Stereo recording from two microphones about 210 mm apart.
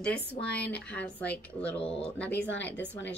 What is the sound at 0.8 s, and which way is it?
Speech, 5° left (ahead or behind).